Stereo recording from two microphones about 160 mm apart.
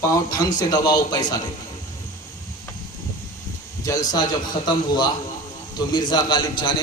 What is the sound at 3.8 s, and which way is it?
Speech, 20° left (ahead or behind).